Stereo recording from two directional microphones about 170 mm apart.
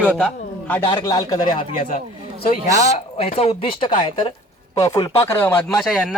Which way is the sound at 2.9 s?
35° left (ahead or behind).